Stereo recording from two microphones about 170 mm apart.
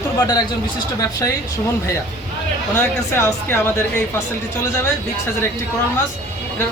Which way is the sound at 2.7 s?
15° left (ahead or behind).